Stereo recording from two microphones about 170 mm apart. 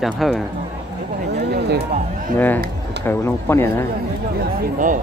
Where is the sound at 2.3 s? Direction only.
10° left (ahead or behind).